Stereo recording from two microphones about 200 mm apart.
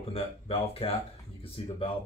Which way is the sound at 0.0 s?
30° left (ahead or behind).